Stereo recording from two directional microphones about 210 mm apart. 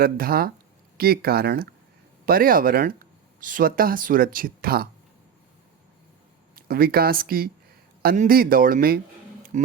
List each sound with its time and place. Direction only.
0.0 s speech: 45° right (ahead or behind)
6.6 s speech: 45° right (ahead or behind)